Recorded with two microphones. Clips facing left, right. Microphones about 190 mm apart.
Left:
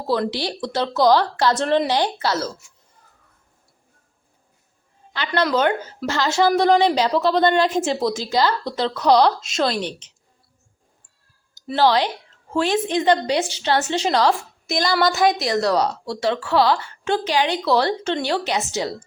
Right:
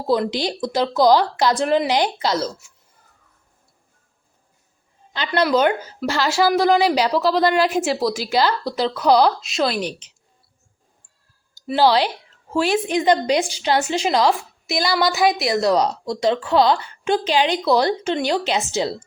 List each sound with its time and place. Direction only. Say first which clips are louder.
0.1 s a woman's voice: right 2 dB; 15° right (ahead or behind)
5.1 s a woman's voice: right 2 dB; 15° right (ahead or behind)
11.7 s a woman's voice: right 1 dB; 10° right (ahead or behind)